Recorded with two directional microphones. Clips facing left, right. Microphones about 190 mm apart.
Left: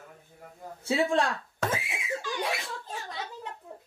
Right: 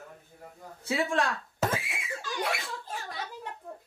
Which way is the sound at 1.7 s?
20° left (ahead or behind).